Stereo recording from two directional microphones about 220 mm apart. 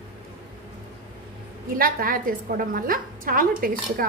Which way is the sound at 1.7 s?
40° right (ahead or behind).